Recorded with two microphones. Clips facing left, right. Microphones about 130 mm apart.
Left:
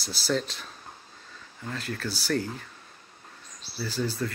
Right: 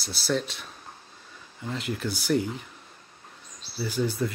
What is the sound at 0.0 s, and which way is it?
Speech, centre (ahead or behind).